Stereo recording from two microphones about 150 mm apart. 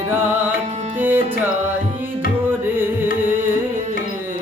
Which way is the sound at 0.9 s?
15° right (ahead or behind).